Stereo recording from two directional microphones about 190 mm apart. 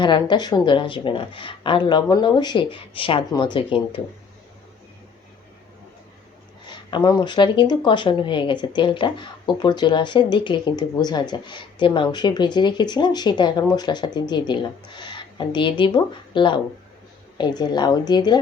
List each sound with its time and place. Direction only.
0.0 s speech: 25° left (ahead or behind)
6.7 s speech: 20° left (ahead or behind)